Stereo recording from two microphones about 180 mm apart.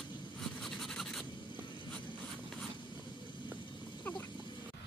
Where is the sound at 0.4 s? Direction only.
Centre (ahead or behind).